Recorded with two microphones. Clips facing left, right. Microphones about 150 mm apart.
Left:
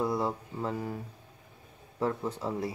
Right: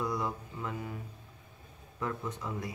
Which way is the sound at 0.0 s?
30° left (ahead or behind).